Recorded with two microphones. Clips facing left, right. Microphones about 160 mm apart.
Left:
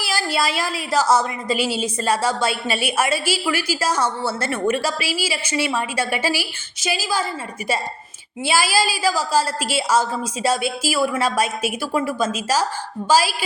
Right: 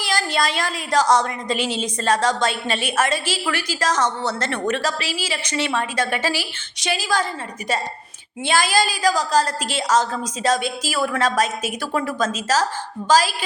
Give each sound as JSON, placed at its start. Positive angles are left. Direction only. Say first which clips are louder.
{"t": 0.0, "sound": "a woman's voice", "louder": "even", "side_deg": 5}
{"t": 8.4, "sound": "a woman's voice", "louder": "even", "side_deg": 5}